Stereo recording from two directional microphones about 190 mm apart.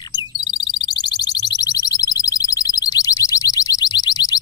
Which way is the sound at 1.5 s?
20° left (ahead or behind).